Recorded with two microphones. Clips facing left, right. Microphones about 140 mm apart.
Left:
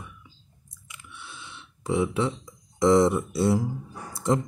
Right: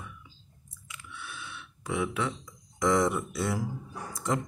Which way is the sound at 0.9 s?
20° left (ahead or behind).